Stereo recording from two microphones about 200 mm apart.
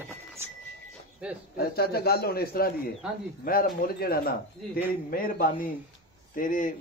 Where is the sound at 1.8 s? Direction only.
50° left (ahead or behind).